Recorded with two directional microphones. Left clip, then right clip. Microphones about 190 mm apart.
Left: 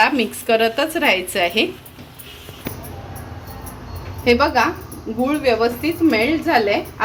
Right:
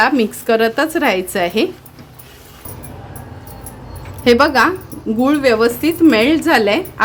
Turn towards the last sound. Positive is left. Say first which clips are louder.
# right 3 dB
turn(degrees=-60)  # may be behind; listen again after turning